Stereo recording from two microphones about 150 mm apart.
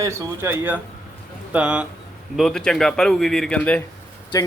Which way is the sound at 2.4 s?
5° left (ahead or behind).